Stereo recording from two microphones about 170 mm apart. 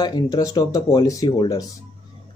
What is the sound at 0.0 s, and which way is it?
Speech, 20° left (ahead or behind).